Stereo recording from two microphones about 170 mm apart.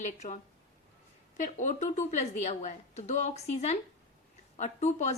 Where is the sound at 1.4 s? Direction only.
50° left (ahead or behind).